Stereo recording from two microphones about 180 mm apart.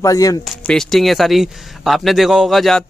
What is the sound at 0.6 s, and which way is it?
Speech, centre (ahead or behind).